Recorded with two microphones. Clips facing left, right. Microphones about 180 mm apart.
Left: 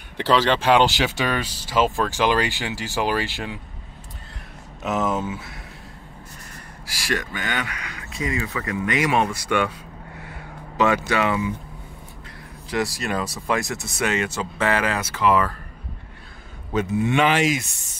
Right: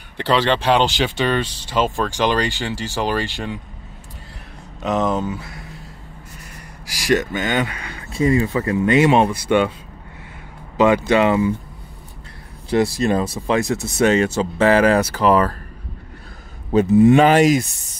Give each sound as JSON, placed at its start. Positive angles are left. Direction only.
{"t": 0.3, "sound": "speech", "side_deg": 5}
{"t": 4.8, "sound": "speech", "side_deg": 5}
{"t": 6.9, "sound": "speech", "side_deg": -20}
{"t": 10.8, "sound": "speech", "side_deg": -25}
{"t": 12.6, "sound": "speech", "side_deg": -25}
{"t": 16.7, "sound": "speech", "side_deg": -35}